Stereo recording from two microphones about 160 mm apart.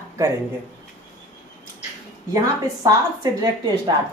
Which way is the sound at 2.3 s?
20° right (ahead or behind).